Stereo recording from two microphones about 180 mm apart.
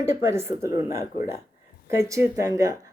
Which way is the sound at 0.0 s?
15° right (ahead or behind).